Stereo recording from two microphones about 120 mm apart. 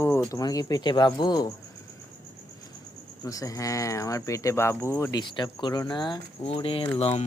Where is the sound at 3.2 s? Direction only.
30° left (ahead or behind).